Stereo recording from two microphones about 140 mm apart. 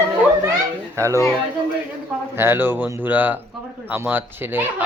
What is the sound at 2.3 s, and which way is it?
Speech, 15° right (ahead or behind).